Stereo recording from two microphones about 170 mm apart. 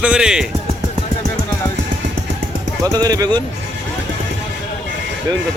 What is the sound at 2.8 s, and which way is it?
Speech, 20° right (ahead or behind).